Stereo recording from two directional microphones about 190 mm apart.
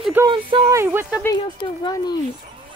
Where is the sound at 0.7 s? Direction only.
10° right (ahead or behind).